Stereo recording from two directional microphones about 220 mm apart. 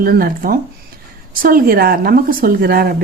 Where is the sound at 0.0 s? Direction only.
40° right (ahead or behind).